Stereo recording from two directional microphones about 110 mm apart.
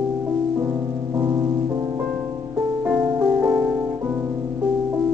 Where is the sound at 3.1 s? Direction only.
25° right (ahead or behind).